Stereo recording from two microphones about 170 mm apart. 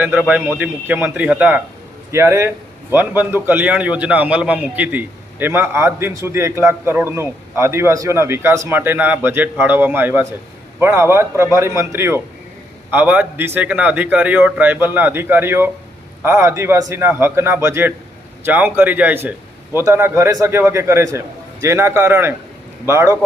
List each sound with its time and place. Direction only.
0.0 s a man's voice: 10° right (ahead or behind)